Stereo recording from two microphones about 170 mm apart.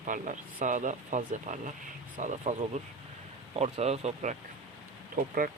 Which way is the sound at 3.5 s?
35° right (ahead or behind).